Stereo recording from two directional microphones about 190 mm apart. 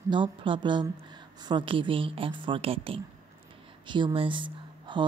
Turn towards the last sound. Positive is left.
turn(degrees=-25)  # may be behind; listen again after turning